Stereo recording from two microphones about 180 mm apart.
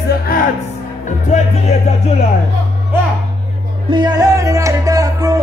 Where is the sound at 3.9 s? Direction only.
25° right (ahead or behind).